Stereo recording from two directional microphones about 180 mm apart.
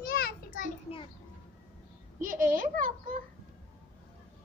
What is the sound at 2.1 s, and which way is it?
A child's voice, 50° right (ahead or behind).